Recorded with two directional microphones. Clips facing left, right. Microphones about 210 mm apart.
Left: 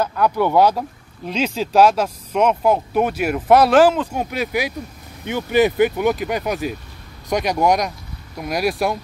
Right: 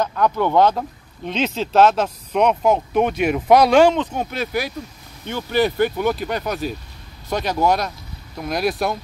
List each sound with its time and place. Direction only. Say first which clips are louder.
0.0 s speech: left 1 dB; 10° left (ahead or behind)